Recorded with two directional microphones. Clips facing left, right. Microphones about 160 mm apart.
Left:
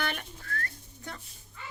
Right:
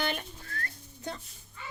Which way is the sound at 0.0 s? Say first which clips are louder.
Right 2 dB; 25° right (ahead or behind).